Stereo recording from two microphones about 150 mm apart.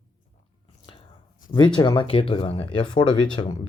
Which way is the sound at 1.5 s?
30° left (ahead or behind).